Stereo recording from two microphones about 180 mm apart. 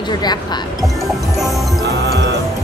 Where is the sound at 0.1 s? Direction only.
25° left (ahead or behind).